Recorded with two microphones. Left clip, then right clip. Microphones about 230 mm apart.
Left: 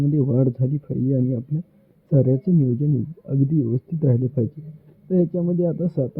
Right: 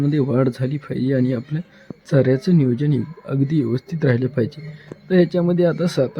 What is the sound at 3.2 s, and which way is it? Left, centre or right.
Speech, centre.